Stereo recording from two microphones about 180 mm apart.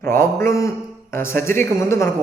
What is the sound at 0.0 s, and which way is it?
A man's voice, 15° left (ahead or behind).